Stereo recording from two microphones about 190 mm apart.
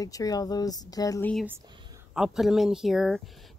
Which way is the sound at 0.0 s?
20° left (ahead or behind).